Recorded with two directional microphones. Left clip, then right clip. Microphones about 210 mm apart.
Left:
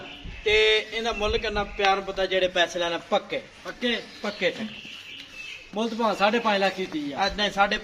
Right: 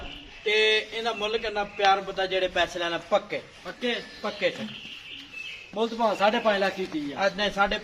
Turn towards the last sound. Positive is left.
turn(degrees=40)  # may be behind; listen again after turning